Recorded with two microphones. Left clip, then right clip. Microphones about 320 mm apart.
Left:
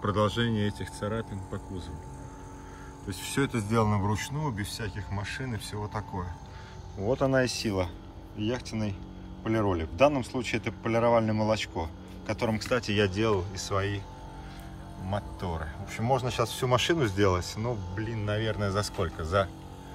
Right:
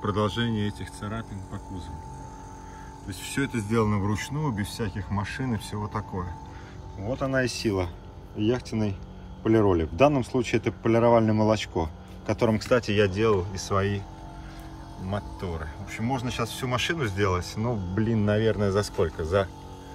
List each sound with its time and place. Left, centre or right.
0.0 s speech: centre
3.1 s speech: centre
15.0 s speech: centre